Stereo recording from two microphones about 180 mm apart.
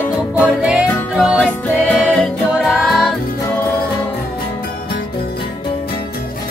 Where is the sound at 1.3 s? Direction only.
10° left (ahead or behind).